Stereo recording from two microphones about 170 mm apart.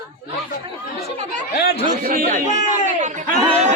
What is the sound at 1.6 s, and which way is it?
Speech, 70° left (ahead or behind).